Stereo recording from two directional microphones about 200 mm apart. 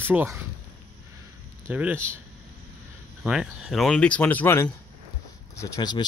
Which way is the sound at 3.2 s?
5° right (ahead or behind).